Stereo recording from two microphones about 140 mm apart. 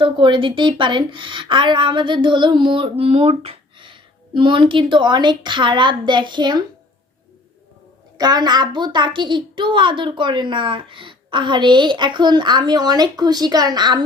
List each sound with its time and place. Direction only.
0.0 s a woman's voice: 35° right (ahead or behind)
3.0 s speech: 45° right (ahead or behind)
8.2 s a woman's voice: 30° right (ahead or behind)